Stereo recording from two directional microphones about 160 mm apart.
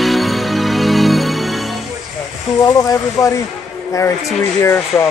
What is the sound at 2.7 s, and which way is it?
Speech, 20° left (ahead or behind).